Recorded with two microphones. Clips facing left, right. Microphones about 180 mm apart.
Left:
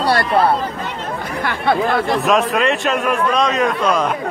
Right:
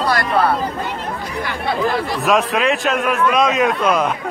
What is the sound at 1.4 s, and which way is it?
Speech, 55° left (ahead or behind).